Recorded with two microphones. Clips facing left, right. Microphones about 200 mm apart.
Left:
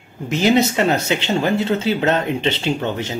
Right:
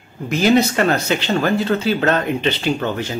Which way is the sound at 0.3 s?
20° left (ahead or behind).